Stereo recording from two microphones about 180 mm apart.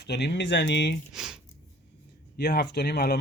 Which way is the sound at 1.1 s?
5° right (ahead or behind).